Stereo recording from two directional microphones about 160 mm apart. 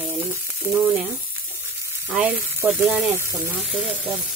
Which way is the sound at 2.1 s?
10° right (ahead or behind).